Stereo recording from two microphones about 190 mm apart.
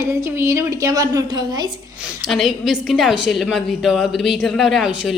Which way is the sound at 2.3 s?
Centre (ahead or behind).